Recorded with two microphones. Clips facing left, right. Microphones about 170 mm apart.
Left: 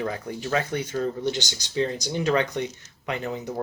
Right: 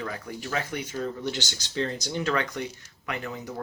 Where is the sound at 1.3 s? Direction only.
15° left (ahead or behind).